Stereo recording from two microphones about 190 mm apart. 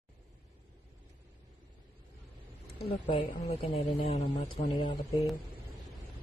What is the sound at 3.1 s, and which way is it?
Speech, 30° left (ahead or behind).